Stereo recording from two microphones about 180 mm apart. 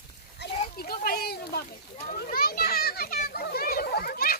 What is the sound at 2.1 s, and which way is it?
Children playing, 55° left (ahead or behind).